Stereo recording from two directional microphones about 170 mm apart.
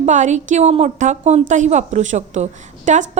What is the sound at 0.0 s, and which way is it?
A woman's voice, 45° right (ahead or behind).